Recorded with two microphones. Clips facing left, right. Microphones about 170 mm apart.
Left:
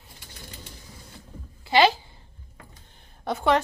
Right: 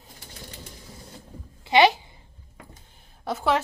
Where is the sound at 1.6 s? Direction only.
20° right (ahead or behind).